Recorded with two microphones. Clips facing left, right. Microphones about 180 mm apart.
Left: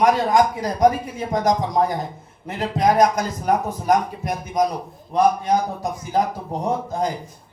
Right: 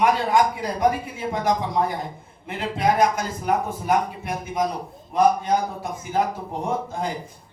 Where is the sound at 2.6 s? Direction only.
40° left (ahead or behind).